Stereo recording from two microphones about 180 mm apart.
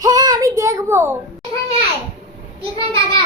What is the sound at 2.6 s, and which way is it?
Speech, 30° right (ahead or behind).